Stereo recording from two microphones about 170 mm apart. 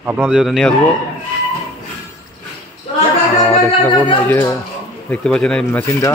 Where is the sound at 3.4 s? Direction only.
15° left (ahead or behind).